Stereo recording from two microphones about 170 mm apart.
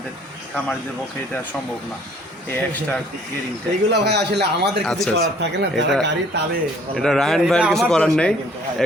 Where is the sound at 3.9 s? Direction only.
80° right.